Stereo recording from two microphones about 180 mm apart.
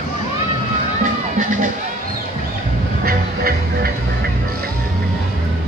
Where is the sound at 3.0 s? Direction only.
55° right (ahead or behind).